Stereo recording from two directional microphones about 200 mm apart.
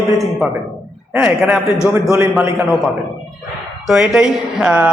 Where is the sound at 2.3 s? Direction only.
Centre (ahead or behind).